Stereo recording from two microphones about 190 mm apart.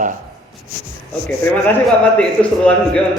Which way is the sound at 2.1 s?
5° left (ahead or behind).